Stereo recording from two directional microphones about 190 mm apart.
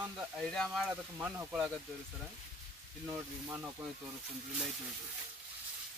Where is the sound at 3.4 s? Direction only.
15° right (ahead or behind).